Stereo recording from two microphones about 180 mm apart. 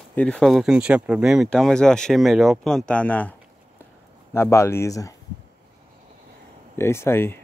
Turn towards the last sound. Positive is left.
turn(degrees=15)  # may be behind; listen again after turning